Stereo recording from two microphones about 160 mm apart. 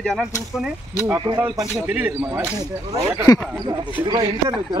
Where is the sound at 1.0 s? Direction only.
25° right (ahead or behind).